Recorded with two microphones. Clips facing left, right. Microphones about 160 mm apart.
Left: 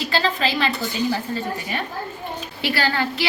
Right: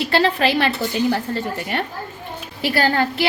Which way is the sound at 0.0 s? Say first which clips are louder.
Right 4 dB; 60° right (ahead or behind).